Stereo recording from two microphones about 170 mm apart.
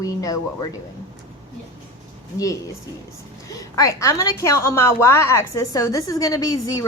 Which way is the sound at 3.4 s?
20° left (ahead or behind).